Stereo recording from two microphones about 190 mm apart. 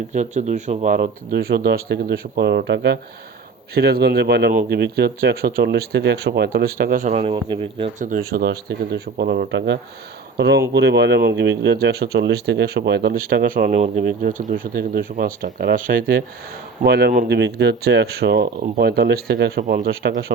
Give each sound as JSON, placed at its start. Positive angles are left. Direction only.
{"t": 0.1, "sound": "speech", "side_deg": -40}
{"t": 0.9, "sound": "speech", "side_deg": -50}
{"t": 7.9, "sound": "speech", "side_deg": -45}
{"t": 9.5, "sound": "speech", "side_deg": -70}
{"t": 10.3, "sound": "speech", "side_deg": -60}